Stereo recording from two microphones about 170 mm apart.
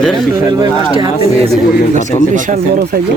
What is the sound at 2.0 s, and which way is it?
Speech, 45° left (ahead or behind).